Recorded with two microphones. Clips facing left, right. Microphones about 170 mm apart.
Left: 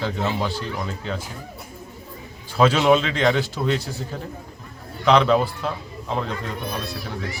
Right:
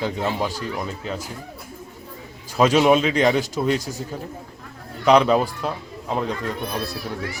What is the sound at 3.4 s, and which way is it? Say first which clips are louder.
Speech: right 2 dB; 40° right (ahead or behind).